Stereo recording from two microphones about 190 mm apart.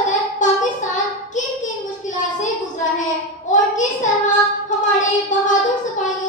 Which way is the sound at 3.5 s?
40° left (ahead or behind).